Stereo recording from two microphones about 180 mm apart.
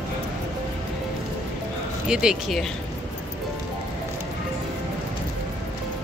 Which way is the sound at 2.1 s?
5° right (ahead or behind).